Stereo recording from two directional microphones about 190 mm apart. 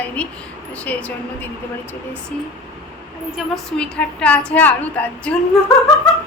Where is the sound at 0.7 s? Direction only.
5° left (ahead or behind).